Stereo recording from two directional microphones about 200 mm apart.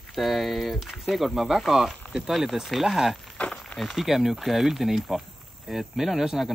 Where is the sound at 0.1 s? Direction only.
Centre (ahead or behind).